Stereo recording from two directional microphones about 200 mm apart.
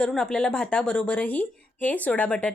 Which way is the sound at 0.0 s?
5° left (ahead or behind).